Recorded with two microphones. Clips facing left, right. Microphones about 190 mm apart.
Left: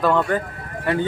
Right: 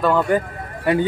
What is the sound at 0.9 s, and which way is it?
Speech, 15° right (ahead or behind).